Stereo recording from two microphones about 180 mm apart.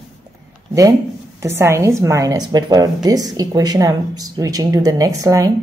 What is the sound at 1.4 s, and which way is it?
A woman's voice, 15° right (ahead or behind).